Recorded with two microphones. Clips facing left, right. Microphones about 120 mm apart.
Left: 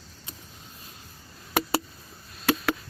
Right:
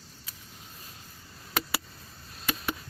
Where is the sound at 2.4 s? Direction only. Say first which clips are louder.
Left 8 dB; 90° left.